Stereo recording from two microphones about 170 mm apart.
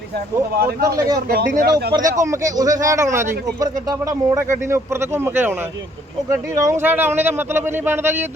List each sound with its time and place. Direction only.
0.3 s speech: 20° right (ahead or behind)
1.3 s speech: 55° right (ahead or behind)
2.0 s speech: 20° right (ahead or behind)